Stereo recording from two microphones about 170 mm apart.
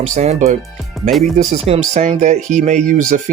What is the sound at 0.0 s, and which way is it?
Speech, 40° right (ahead or behind).